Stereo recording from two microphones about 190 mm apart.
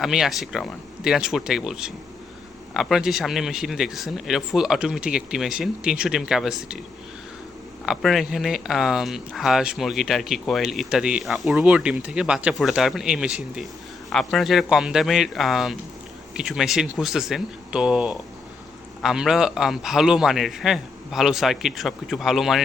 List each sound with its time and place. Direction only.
0.0 s speech: centre (ahead or behind)
7.9 s speech: centre (ahead or behind)